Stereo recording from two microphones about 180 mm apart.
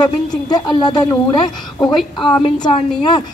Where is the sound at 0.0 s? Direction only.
25° left (ahead or behind).